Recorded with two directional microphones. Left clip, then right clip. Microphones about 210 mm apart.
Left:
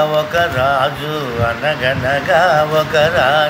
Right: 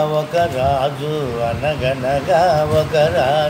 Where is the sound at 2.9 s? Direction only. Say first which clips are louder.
Left 3 dB; 15° right (ahead or behind).